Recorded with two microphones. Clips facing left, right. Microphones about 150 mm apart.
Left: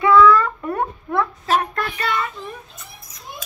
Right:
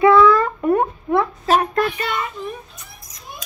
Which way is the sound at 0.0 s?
25° right (ahead or behind).